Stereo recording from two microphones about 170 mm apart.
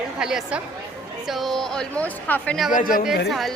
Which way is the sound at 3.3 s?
Centre (ahead or behind).